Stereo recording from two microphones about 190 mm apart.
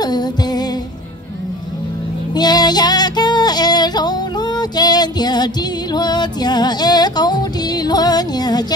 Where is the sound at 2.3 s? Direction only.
20° left (ahead or behind).